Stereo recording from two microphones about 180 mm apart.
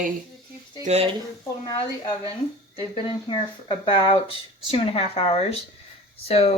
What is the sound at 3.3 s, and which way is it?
Speech, 25° left (ahead or behind).